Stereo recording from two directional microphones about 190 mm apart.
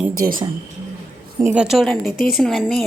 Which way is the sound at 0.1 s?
50° right (ahead or behind).